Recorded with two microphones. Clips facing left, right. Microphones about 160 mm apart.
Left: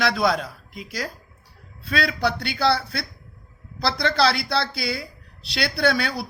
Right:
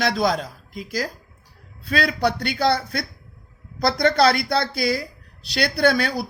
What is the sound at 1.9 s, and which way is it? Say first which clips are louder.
Speech: right 2 dB; 50° right (ahead or behind).